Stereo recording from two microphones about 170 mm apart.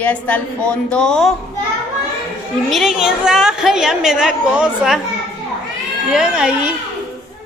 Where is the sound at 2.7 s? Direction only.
Centre (ahead or behind).